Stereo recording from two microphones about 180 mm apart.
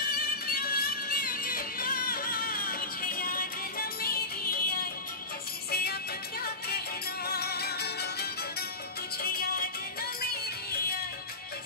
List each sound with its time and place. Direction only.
0.0 s music: 55° left (ahead or behind)
7.2 s music: 60° left (ahead or behind)